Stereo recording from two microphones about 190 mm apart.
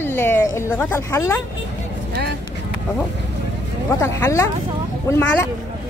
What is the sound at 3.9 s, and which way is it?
Speech, 15° left (ahead or behind).